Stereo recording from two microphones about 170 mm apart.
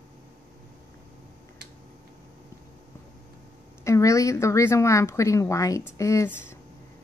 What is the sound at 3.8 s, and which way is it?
A woman's voice, 20° left (ahead or behind).